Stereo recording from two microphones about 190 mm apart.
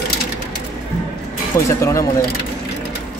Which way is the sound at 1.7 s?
15° left (ahead or behind).